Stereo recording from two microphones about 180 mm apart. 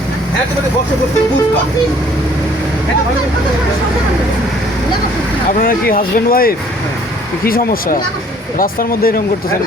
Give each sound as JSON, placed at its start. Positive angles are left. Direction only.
{"t": 5.6, "sound": "speech", "side_deg": 55}